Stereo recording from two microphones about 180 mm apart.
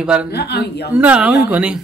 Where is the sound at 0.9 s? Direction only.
5° right (ahead or behind).